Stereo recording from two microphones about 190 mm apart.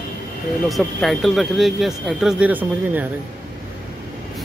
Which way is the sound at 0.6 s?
Centre (ahead or behind).